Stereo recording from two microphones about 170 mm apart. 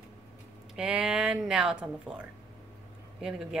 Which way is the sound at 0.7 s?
5° right (ahead or behind).